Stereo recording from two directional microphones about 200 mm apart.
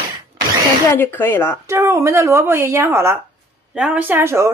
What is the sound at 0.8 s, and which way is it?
Speech, 10° left (ahead or behind).